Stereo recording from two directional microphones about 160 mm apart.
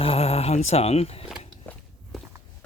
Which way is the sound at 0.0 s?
35° left (ahead or behind).